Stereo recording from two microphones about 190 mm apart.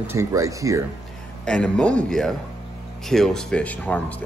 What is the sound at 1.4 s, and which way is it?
Speech, 5° left (ahead or behind).